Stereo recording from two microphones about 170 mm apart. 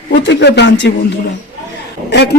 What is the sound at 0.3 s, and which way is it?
Speech, 85° left.